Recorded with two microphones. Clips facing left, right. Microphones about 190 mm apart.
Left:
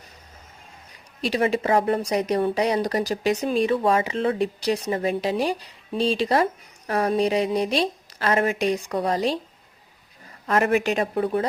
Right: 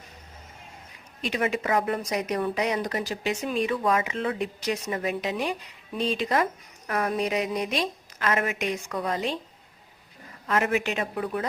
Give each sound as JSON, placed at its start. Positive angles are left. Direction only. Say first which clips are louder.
{"t": 1.2, "sound": "speech", "louder": "left 5 dB", "side_deg": 35}
{"t": 10.4, "sound": "speech", "louder": "left 4 dB", "side_deg": 40}